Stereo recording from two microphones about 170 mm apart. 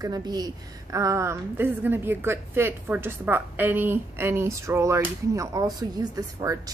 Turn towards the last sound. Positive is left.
turn(degrees=-20)  # may be behind; listen again after turning